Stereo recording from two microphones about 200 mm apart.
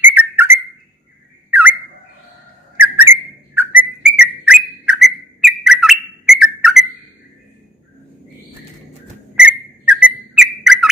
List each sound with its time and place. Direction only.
0.0 s whistle: 10° right (ahead or behind)
3.0 s whistle: 10° right (ahead or behind)
9.3 s whistle: 5° right (ahead or behind)